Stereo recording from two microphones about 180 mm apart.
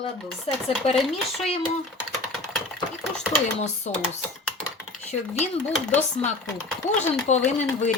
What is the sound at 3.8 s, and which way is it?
Speech, 40° left (ahead or behind).